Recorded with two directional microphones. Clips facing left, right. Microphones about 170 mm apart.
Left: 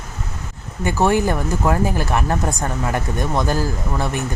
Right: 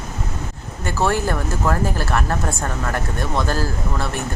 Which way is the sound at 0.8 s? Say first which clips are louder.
Left 3 dB; 15° left (ahead or behind).